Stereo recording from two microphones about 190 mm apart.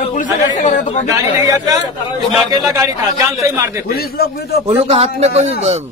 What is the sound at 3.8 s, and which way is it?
Speech, 55° left (ahead or behind).